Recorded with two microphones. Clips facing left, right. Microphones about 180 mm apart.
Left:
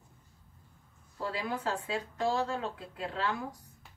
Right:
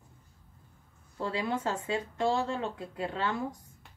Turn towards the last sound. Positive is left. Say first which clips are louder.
# right 2 dB
turn(degrees=-25)  # may be behind; listen again after turning